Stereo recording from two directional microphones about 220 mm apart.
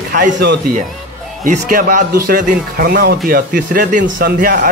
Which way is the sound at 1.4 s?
40° right (ahead or behind).